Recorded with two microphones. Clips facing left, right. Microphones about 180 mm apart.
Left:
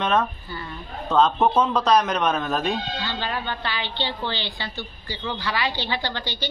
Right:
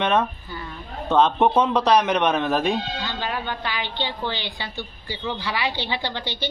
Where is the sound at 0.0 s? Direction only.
10° right (ahead or behind).